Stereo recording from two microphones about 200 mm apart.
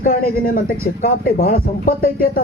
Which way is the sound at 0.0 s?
45° left (ahead or behind).